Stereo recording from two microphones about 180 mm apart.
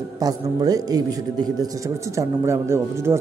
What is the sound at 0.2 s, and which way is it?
A man's voice, 20° right (ahead or behind).